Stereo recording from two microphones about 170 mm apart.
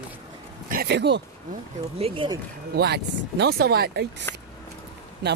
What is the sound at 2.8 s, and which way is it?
Speech, 75° right (ahead or behind).